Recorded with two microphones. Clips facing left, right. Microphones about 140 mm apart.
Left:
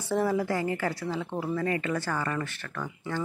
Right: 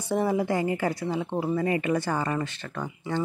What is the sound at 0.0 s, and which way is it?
A woman's voice, 15° right (ahead or behind).